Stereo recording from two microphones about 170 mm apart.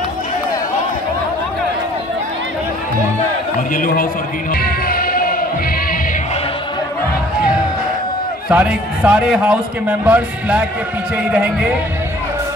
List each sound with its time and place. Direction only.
3.7 s a man's voice: 55° left (ahead or behind)
4.6 s music: 60° left (ahead or behind)
8.5 s a man's voice: 5° right (ahead or behind)